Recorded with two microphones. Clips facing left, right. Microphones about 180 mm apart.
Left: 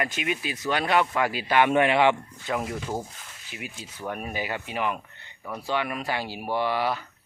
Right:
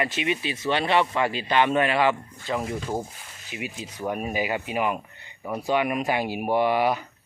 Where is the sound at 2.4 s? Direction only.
Centre (ahead or behind); by 7.0 s 20° right (ahead or behind).